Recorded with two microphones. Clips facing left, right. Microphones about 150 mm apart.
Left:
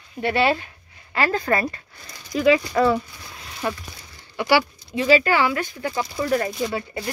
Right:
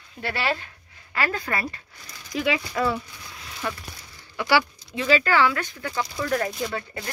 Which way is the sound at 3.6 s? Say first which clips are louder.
Left 4 dB; 30° left (ahead or behind).